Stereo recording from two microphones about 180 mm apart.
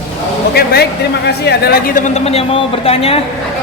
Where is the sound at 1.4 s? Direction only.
60° left (ahead or behind); by 3.2 s 30° left (ahead or behind).